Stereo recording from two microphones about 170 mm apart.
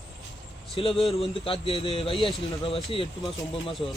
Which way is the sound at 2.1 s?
Centre (ahead or behind).